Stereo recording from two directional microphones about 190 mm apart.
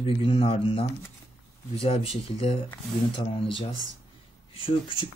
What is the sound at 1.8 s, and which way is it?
Speech, 30° left (ahead or behind).